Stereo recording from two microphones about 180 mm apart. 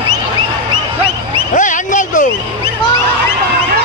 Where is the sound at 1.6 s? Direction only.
45° left (ahead or behind).